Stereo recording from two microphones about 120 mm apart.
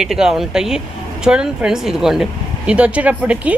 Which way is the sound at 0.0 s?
5° right (ahead or behind).